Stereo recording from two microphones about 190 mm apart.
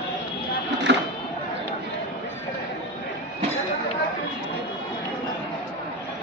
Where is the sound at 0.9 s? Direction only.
65° right (ahead or behind).